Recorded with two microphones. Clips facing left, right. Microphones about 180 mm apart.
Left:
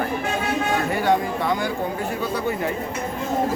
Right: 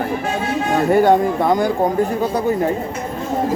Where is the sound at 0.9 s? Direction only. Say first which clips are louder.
Right 9 dB; 45° right (ahead or behind).